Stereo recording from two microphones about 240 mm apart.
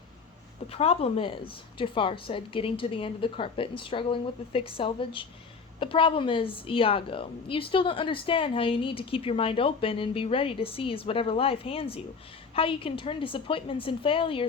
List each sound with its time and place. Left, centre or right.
0.7 s a woman's voice: left